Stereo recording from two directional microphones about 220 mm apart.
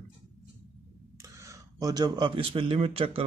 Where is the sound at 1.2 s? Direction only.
15° right (ahead or behind).